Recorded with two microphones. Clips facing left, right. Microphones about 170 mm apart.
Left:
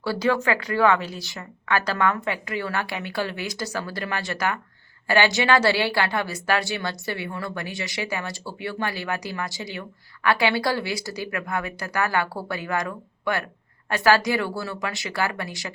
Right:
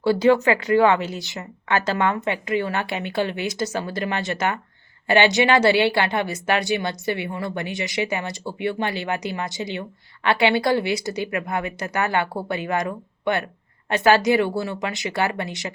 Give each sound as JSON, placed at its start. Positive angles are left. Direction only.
{"t": 0.0, "sound": "a woman's voice", "side_deg": -20}